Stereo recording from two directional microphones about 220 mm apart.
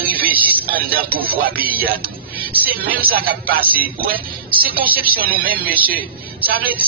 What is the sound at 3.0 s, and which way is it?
A man's voice, 45° right (ahead or behind).